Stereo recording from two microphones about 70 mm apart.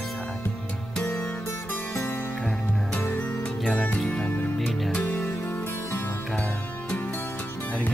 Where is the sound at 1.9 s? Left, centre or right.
Left.